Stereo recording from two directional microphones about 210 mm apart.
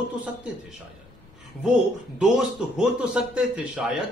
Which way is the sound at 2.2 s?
5° right (ahead or behind).